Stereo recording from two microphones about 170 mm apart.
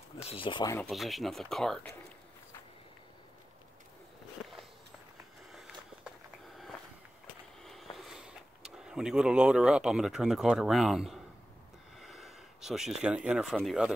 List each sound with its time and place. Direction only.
0.3 s speech: 30° left (ahead or behind)
0.8 s speech: centre (ahead or behind)
5.5 s a sound: centre (ahead or behind)
7.6 s speech: centre (ahead or behind)